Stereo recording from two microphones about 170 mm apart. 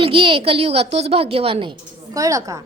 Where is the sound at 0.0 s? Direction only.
30° right (ahead or behind).